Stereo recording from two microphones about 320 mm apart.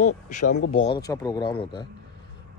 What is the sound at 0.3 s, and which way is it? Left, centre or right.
Speech, left.